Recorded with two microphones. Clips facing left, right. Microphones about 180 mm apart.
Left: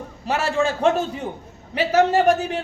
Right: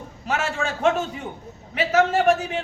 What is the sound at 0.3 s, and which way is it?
Speech, 35° left (ahead or behind).